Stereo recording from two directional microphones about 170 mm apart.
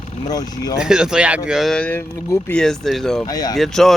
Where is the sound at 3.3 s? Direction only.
20° left (ahead or behind).